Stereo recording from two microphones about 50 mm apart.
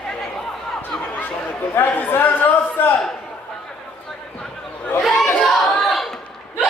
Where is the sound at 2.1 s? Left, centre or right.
Left.